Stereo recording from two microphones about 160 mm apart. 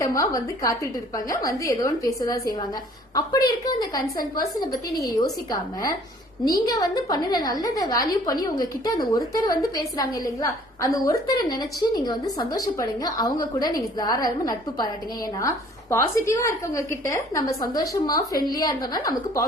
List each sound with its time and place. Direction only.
0.0 s a woman's voice: 20° left (ahead or behind)
6.7 s a woman's voice: 25° left (ahead or behind)